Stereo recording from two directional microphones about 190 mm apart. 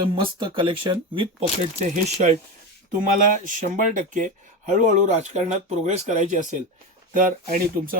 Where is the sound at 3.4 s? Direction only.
45° right (ahead or behind).